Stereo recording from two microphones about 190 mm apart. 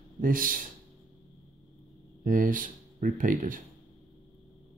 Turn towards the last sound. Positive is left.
turn(degrees=-45)  # may be behind; listen again after turning